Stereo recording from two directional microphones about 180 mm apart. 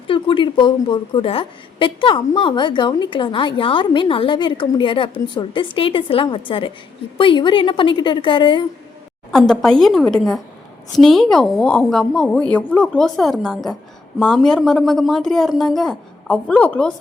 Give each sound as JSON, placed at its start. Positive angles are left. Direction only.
{"t": 0.1, "sound": "a woman's voice", "side_deg": 25}
{"t": 9.3, "sound": "a woman's voice", "side_deg": 0}